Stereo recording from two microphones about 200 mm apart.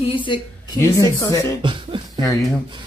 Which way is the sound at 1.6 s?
25° right (ahead or behind).